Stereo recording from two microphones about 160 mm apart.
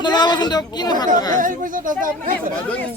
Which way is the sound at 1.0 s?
55° right (ahead or behind).